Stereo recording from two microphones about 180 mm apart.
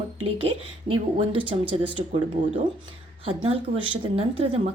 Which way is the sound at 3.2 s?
30° right (ahead or behind).